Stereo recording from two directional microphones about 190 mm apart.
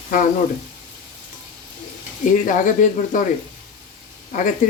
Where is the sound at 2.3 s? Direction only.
45° left (ahead or behind).